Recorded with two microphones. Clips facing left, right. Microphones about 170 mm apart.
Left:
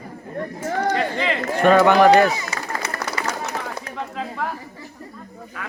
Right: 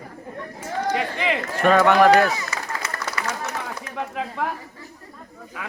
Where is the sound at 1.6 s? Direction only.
Centre (ahead or behind).